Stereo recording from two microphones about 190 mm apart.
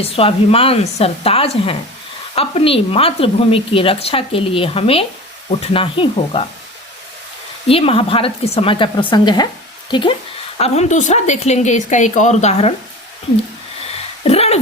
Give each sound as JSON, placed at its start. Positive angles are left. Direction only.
{"t": 0.0, "sound": "a woman's voice", "side_deg": 30}
{"t": 7.7, "sound": "a woman's voice", "side_deg": 30}
{"t": 10.6, "sound": "a woman's voice", "side_deg": 35}
{"t": 14.3, "sound": "a sound", "side_deg": 30}